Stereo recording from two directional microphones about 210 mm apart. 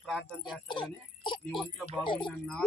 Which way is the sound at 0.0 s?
Centre (ahead or behind).